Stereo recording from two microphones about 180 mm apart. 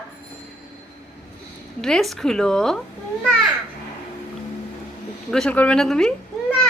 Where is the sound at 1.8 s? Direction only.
Centre (ahead or behind).